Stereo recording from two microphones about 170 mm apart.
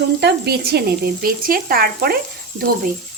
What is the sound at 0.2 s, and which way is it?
A child's voice, 70° right (ahead or behind).